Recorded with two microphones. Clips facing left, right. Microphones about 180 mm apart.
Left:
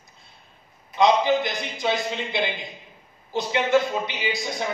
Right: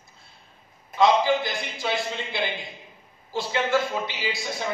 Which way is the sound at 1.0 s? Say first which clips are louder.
Left 1 dB; 20° left (ahead or behind).